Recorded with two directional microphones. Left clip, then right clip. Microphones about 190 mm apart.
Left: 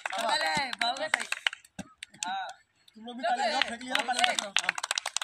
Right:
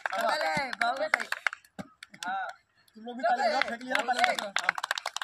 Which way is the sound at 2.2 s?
20° right (ahead or behind).